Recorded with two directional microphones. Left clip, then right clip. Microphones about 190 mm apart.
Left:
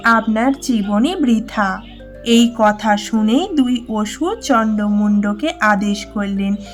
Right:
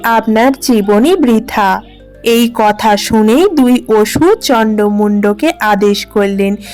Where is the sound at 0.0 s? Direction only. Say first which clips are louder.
Right 5 dB; 35° right (ahead or behind).